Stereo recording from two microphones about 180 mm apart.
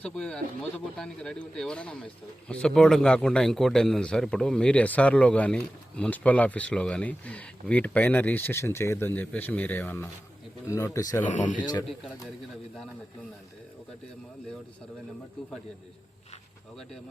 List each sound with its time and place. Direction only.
0.0 s a man's voice: 5° left (ahead or behind)
11.2 s speech: 45° left (ahead or behind)
11.6 s speech: 25° left (ahead or behind)